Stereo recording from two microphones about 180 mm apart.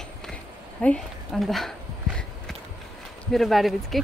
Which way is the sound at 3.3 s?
Centre (ahead or behind).